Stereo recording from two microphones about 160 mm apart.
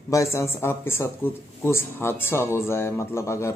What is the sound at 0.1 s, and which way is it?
Speech, 20° left (ahead or behind).